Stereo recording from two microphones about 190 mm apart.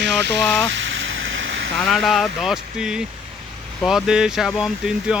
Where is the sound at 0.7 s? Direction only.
75° right (ahead or behind).